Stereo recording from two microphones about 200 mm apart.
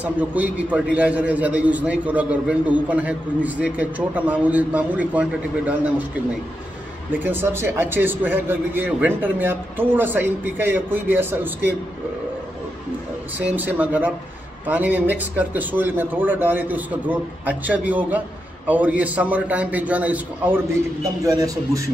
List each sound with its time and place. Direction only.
0.0 s a man's voice: 5° right (ahead or behind)
7.1 s a man's voice: 10° right (ahead or behind)
13.6 s a man's voice: 10° right (ahead or behind)